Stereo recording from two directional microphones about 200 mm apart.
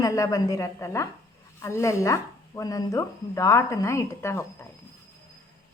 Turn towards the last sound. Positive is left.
turn(degrees=15)  # may be behind; listen again after turning